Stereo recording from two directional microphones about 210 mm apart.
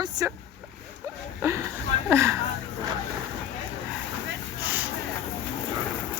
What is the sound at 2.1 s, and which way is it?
Speech, 15° right (ahead or behind).